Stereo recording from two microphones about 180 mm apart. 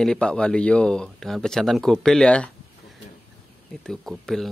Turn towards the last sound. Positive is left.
turn(degrees=0)  # may be behind; listen again after turning